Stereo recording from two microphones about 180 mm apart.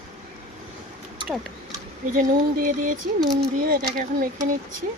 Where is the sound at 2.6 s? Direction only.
45° right (ahead or behind).